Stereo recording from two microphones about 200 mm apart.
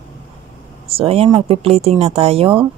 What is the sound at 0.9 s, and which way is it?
Speech, 30° right (ahead or behind).